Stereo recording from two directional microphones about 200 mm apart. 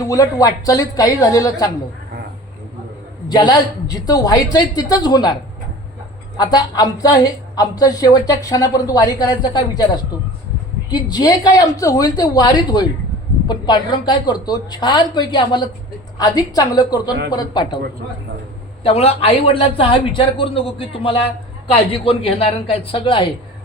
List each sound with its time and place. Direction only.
0.0 s a woman's voice: 15° left (ahead or behind)
3.2 s a woman's voice: 20° left (ahead or behind)
18.8 s a woman's voice: 30° left (ahead or behind)